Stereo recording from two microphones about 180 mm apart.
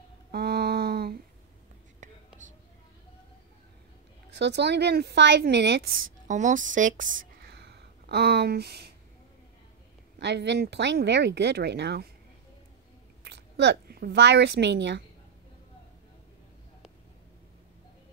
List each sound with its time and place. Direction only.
0.3 s a sound: 65° right (ahead or behind)
2.0 s whispering: 45° right (ahead or behind)
4.3 s speech: 70° right (ahead or behind)
6.2 s speech: 45° right (ahead or behind); by 8.9 s 65° right (ahead or behind)
10.1 s speech: 75° right (ahead or behind)
13.2 s a woman's voice: 70° right (ahead or behind)